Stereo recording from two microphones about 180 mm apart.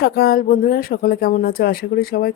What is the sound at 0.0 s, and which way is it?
Speech, 60° left (ahead or behind).